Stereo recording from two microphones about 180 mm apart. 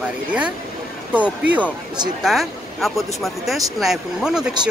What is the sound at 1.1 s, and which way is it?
Speech, 10° right (ahead or behind).